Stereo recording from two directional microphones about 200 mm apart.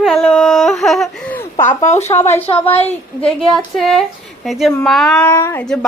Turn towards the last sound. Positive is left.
turn(degrees=10)  # may be behind; listen again after turning